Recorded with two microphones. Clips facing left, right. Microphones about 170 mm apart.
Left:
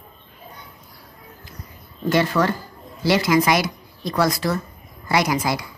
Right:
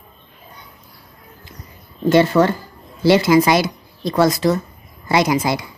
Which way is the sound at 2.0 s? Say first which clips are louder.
Right 6 dB; 25° right (ahead or behind).